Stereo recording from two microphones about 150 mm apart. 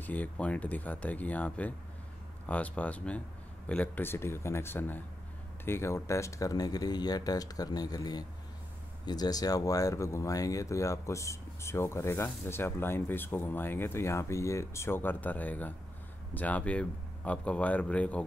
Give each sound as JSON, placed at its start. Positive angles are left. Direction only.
{"t": 0.0, "sound": "speech", "side_deg": 10}